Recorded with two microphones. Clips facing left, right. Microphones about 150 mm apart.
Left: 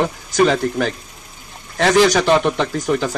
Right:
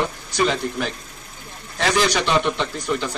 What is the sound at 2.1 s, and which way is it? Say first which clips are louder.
Speech: left 5 dB; 45° left (ahead or behind).